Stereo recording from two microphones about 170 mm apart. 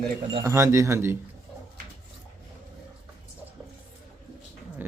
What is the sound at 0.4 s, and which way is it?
Speech, 15° right (ahead or behind).